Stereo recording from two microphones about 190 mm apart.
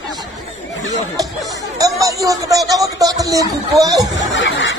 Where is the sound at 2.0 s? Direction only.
15° right (ahead or behind).